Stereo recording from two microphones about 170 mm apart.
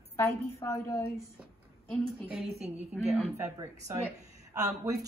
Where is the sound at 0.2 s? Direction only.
15° left (ahead or behind).